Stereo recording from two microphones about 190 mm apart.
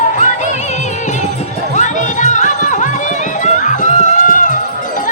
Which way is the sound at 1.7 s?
40° left (ahead or behind).